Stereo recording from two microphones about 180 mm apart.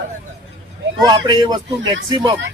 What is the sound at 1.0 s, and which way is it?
Speech, 20° right (ahead or behind).